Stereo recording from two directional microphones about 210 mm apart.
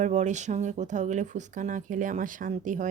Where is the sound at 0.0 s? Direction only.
35° right (ahead or behind).